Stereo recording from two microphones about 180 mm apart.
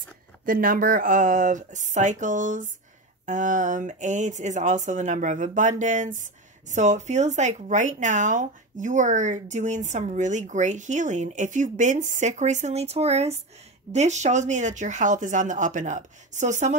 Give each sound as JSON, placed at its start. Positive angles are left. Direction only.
{"t": 0.5, "sound": "speech", "side_deg": -50}